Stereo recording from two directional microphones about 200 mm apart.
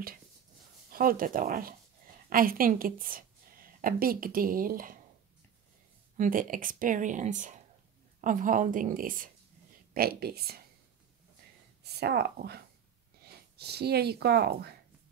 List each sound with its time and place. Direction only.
0.8 s a woman's voice: 45° right (ahead or behind)
6.1 s a woman's voice: 40° right (ahead or behind)
11.8 s a woman's voice: 55° right (ahead or behind)